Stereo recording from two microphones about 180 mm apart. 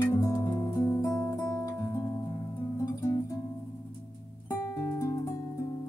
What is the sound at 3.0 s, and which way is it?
Guitar, 20° left (ahead or behind).